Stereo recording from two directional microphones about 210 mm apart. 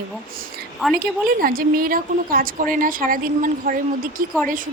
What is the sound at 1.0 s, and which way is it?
A woman's voice, 45° right (ahead or behind).